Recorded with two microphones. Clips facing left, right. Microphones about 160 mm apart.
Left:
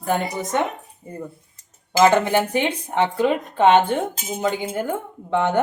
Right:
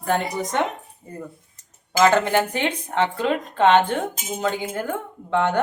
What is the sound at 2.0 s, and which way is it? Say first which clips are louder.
Speech: left 1 dB; 15° left (ahead or behind).